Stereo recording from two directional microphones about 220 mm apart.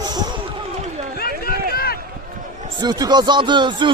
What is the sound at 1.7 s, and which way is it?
Run, 45° left (ahead or behind).